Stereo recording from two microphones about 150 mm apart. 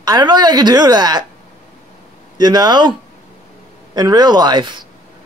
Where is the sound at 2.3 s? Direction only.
30° right (ahead or behind).